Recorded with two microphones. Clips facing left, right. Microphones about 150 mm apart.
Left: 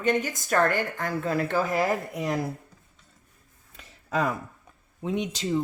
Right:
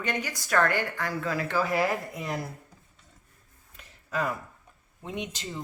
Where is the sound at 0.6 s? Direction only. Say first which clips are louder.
Left 2 dB; 45° left (ahead or behind).